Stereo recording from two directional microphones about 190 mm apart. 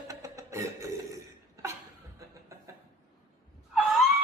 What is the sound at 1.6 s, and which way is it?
Chuckle, 15° right (ahead or behind).